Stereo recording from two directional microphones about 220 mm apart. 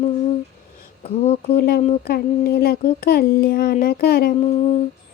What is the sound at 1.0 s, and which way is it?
Speech, 30° left (ahead or behind).